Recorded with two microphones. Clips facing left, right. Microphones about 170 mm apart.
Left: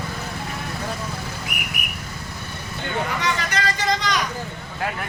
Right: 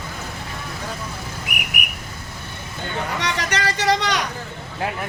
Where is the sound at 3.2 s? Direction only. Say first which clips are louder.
Even; 70° right (ahead or behind).